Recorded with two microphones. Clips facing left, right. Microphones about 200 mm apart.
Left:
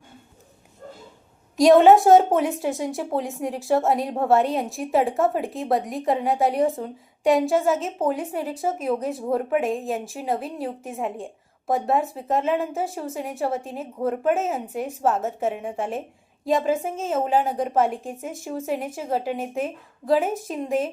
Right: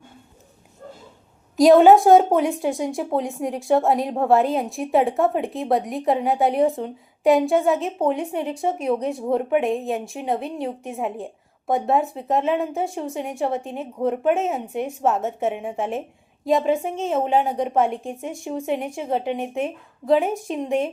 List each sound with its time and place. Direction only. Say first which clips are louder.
1.5 s a woman's voice: right 1 dB; centre (ahead or behind)